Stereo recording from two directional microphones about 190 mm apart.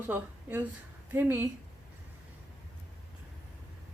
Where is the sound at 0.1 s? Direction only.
10° right (ahead or behind).